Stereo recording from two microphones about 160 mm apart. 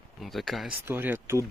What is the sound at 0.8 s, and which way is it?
Speech, 10° right (ahead or behind).